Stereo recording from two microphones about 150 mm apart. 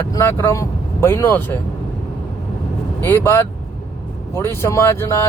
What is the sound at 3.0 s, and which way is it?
Speech, 15° left (ahead or behind).